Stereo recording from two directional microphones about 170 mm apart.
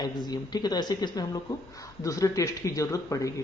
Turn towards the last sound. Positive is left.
turn(degrees=20)  # may be behind; listen again after turning